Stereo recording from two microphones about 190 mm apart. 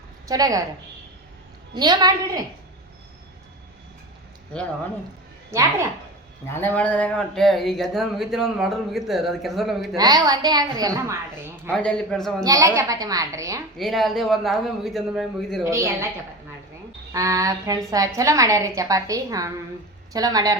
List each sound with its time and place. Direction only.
0.3 s a woman's voice: 20° right (ahead or behind)
1.7 s a woman's voice: 20° right (ahead or behind)
5.5 s a woman's voice: 15° right (ahead or behind)
6.5 s speech: 10° left (ahead or behind)
9.9 s a woman's voice: 20° right (ahead or behind)
11.7 s speech: 5° left (ahead or behind)
12.4 s a woman's voice: 15° right (ahead or behind)
13.7 s speech: centre (ahead or behind)
15.7 s a woman's voice: 15° right (ahead or behind)
17.1 s a woman's voice: 15° right (ahead or behind)